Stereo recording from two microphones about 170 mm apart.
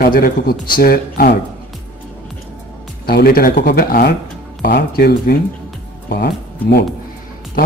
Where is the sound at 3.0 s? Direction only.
65° left (ahead or behind).